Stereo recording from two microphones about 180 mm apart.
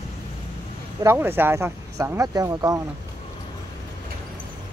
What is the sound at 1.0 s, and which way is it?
Speech, 15° right (ahead or behind).